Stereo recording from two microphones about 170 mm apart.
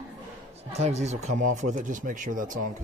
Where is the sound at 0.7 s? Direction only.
40° right (ahead or behind).